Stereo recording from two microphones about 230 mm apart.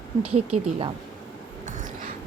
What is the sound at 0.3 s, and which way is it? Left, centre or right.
Speech, right.